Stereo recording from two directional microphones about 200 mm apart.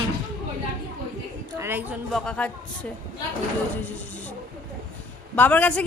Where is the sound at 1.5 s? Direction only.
10° right (ahead or behind).